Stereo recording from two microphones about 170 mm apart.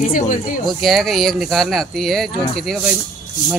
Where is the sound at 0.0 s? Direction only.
50° left (ahead or behind).